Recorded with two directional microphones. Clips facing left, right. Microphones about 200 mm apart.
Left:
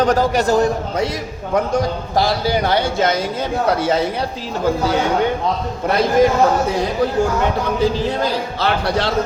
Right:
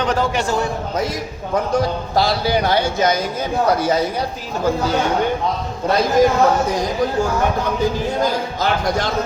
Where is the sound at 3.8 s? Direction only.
30° left (ahead or behind).